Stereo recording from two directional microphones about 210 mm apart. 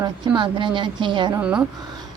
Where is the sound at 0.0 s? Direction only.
25° right (ahead or behind).